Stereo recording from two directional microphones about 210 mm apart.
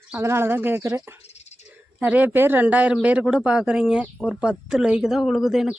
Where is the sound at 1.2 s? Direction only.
30° left (ahead or behind).